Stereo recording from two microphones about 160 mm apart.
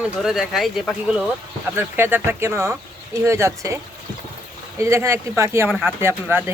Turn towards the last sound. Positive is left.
turn(degrees=-15)  # may be behind; listen again after turning